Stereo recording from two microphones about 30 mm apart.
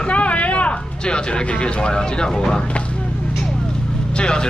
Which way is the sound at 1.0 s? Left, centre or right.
Left.